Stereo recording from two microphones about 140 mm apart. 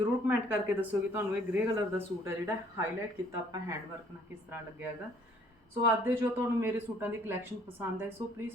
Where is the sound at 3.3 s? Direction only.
20° right (ahead or behind).